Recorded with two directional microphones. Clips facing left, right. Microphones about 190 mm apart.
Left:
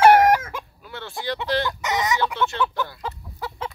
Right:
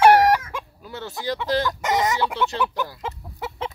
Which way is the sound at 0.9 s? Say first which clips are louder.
Right 1 dB; 40° right (ahead or behind).